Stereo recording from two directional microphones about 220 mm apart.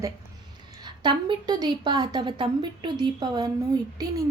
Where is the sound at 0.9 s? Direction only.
20° right (ahead or behind).